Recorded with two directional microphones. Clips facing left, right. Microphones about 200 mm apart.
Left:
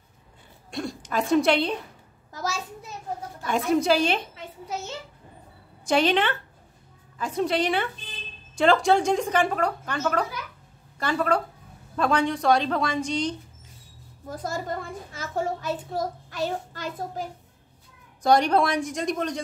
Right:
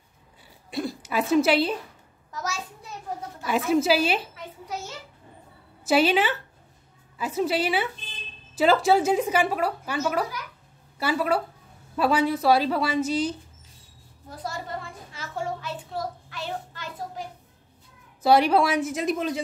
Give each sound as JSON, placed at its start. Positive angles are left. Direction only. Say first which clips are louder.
{"t": 0.7, "sound": "speech", "louder": "right 2 dB", "side_deg": -5}
{"t": 3.4, "sound": "a woman's voice", "louder": "even", "side_deg": -5}
{"t": 5.9, "sound": "a woman's voice", "louder": "right 1 dB", "side_deg": -5}
{"t": 14.3, "sound": "a child's voice", "louder": "left 3 dB", "side_deg": 45}
{"t": 18.2, "sound": "a woman's voice", "louder": "right 1 dB", "side_deg": -5}